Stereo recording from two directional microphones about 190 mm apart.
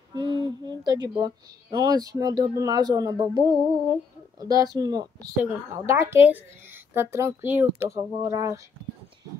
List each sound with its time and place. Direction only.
0.1 s a woman's voice: 25° right (ahead or behind)